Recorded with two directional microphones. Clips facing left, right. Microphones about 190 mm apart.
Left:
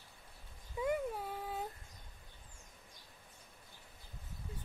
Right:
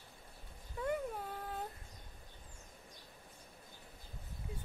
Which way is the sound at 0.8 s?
10° left (ahead or behind).